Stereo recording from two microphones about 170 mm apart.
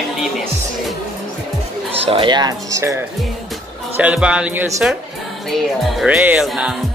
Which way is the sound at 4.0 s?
5° right (ahead or behind).